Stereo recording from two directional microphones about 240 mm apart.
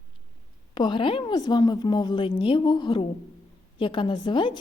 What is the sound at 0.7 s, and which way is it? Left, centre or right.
A woman's voice, centre.